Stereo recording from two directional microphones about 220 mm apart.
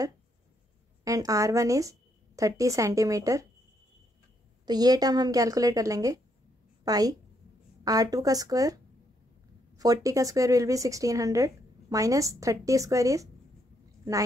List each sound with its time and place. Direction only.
1.0 s speech: 15° right (ahead or behind)
4.6 s a woman's voice: 15° right (ahead or behind)
9.8 s speech: 15° right (ahead or behind)